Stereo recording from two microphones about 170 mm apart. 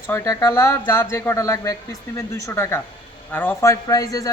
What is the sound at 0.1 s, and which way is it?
A man's voice, 15° left (ahead or behind).